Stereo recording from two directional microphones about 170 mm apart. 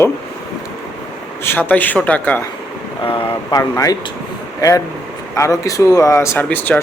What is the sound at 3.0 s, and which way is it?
Speech, 30° left (ahead or behind).